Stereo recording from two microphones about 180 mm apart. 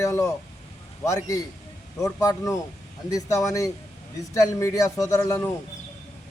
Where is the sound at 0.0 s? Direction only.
15° left (ahead or behind).